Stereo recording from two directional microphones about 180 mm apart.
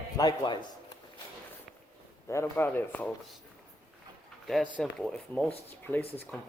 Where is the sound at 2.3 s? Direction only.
15° left (ahead or behind).